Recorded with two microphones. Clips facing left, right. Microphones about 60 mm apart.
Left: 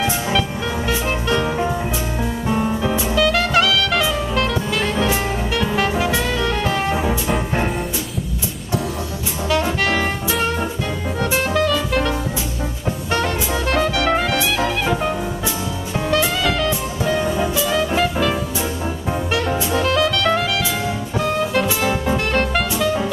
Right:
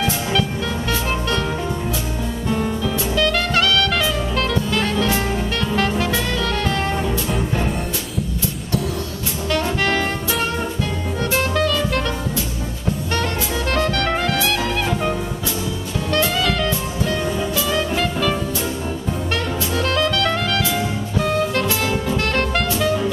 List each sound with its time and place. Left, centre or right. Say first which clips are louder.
0.0 s music: left 1 dB; centre
2.5 s music: left 2 dB; left
3.2 s music: left 2 dB; centre
9.5 s music: left 1 dB; centre
13.1 s music: left 4 dB; centre